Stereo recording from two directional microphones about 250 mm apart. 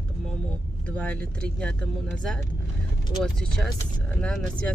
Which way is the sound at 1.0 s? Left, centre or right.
Centre.